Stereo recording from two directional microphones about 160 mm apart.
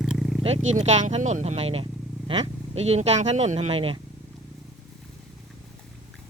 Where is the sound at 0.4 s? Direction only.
45° right (ahead or behind).